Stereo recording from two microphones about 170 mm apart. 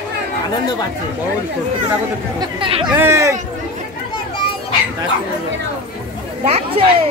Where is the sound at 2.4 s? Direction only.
30° right (ahead or behind).